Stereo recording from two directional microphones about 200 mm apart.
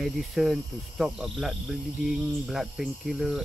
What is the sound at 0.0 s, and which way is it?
Speech, centre (ahead or behind).